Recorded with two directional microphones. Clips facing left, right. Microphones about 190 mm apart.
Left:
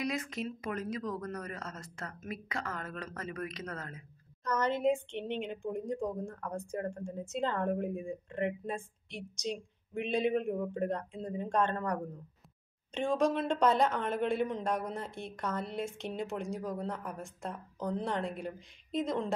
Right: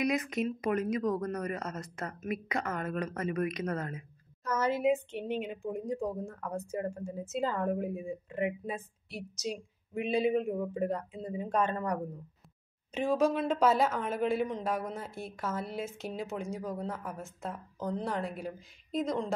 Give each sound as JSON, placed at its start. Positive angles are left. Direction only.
{"t": 0.0, "sound": "speech", "side_deg": -20}
{"t": 4.5, "sound": "a woman's voice", "side_deg": -5}